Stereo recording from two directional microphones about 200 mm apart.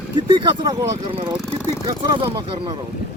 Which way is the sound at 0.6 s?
20° right (ahead or behind).